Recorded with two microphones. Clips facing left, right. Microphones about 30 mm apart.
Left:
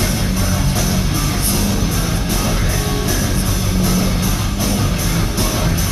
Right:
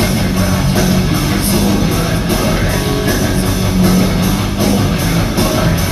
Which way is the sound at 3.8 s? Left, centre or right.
Right.